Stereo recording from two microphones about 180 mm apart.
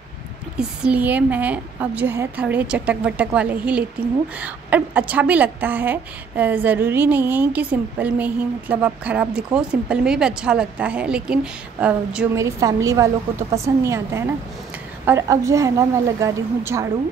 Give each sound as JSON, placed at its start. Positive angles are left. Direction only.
{"t": 0.6, "sound": "a woman's voice", "side_deg": -5}
{"t": 12.4, "sound": "a woman's voice", "side_deg": -15}